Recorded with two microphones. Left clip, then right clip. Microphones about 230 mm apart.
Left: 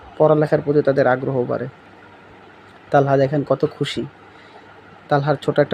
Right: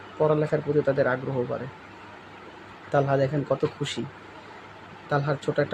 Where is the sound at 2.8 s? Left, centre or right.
Left.